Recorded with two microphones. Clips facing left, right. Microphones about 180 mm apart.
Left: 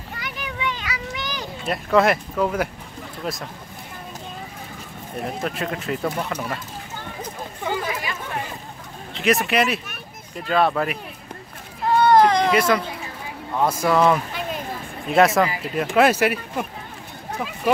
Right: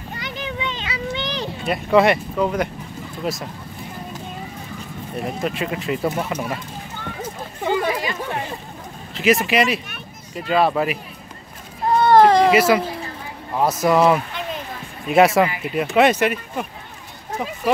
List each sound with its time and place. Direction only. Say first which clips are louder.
0.2 s a sound: right 1 dB; 25° right (ahead or behind)
1.7 s speech: right 2 dB; centre (ahead or behind)
5.4 s speech: right 4 dB; centre (ahead or behind)
7.6 s a sound: right 5 dB; 25° right (ahead or behind)
9.1 s speech: right 2 dB; centre (ahead or behind)
12.1 s baby cry: right 4 dB; 30° right (ahead or behind)
12.4 s speech: right 4 dB; 5° right (ahead or behind)